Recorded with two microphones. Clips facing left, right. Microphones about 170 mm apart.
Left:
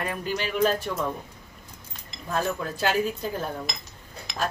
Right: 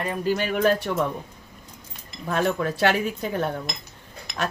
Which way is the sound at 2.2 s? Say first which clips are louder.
Right 4 dB; 75° right (ahead or behind).